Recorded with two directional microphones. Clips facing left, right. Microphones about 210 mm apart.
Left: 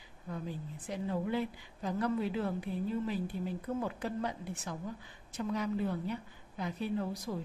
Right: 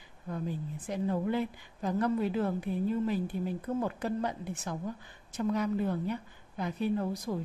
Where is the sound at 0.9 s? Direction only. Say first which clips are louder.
Right 4 dB; 50° right (ahead or behind).